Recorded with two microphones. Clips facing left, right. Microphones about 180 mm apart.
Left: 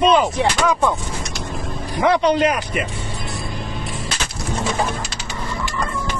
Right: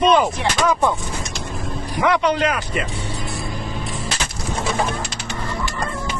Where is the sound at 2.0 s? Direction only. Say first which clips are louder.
Left 2 dB; 30° left (ahead or behind).